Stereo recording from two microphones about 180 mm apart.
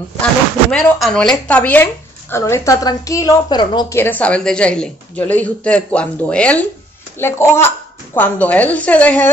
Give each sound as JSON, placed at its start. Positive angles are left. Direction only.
{"t": 0.2, "sound": "speech", "side_deg": 5}
{"t": 4.0, "sound": "speech", "side_deg": 10}